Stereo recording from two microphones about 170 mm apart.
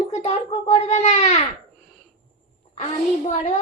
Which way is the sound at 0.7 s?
40° left (ahead or behind).